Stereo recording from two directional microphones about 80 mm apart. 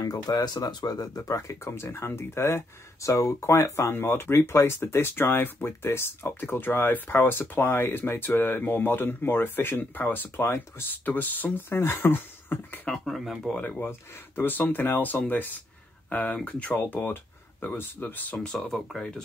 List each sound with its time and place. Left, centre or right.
0.0 s speech: left
12.8 s speech: centre
13.6 s speech: left
18.4 s speech: centre